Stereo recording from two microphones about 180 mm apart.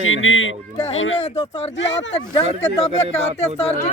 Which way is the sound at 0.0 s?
90° left.